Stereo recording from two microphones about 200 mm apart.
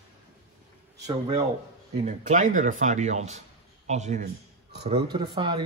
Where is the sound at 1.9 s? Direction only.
35° right (ahead or behind).